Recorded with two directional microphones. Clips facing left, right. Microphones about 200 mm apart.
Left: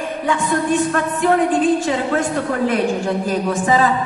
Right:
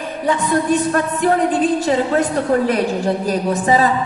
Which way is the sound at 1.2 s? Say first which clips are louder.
Left 1 dB; 40° right (ahead or behind).